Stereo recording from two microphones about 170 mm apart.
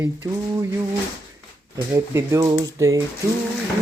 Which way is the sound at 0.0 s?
15° right (ahead or behind).